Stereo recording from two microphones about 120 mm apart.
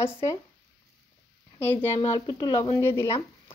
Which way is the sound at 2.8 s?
25° left (ahead or behind).